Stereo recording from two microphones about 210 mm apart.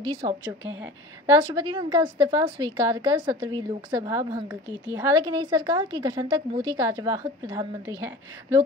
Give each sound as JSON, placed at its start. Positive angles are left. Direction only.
{"t": 0.0, "sound": "a woman's voice", "side_deg": -20}